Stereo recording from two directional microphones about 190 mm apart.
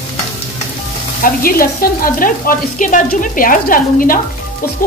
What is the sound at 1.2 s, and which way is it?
Sizzle, 50° left (ahead or behind).